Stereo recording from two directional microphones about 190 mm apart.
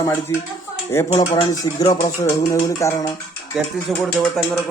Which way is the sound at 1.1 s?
25° left (ahead or behind).